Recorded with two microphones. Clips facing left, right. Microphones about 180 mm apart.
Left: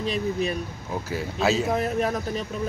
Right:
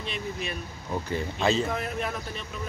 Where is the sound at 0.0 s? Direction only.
40° left (ahead or behind).